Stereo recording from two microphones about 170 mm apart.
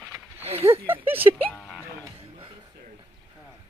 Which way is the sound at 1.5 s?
5° left (ahead or behind).